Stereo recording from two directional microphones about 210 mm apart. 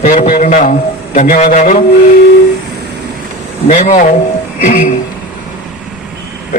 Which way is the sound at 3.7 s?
35° left (ahead or behind).